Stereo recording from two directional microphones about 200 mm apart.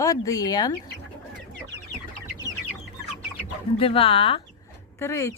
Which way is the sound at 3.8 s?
30° left (ahead or behind).